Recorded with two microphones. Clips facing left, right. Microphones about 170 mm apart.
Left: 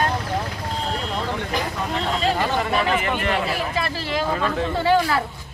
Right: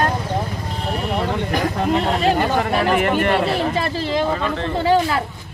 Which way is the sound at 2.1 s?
55° right (ahead or behind).